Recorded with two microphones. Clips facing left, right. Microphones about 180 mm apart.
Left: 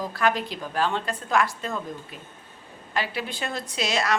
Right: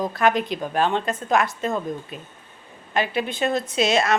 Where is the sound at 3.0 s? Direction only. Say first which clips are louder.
Right 6 dB; 20° right (ahead or behind).